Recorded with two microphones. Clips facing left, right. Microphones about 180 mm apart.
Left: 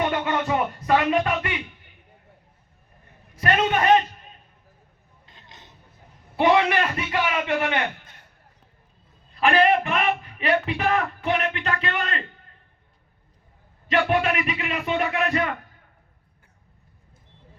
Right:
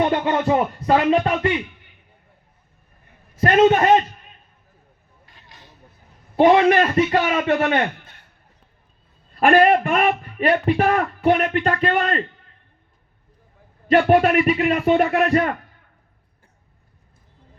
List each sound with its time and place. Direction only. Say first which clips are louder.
0.0 s music: right 5 dB; 35° right (ahead or behind)
3.4 s music: right 8 dB; 40° right (ahead or behind)
5.2 s vehicle: right 1 dB; 20° left (ahead or behind)
6.3 s speech: right 6 dB; 45° right (ahead or behind)
9.4 s speech: right 5 dB; 50° right (ahead or behind)
13.9 s speech: right 7 dB; 45° right (ahead or behind)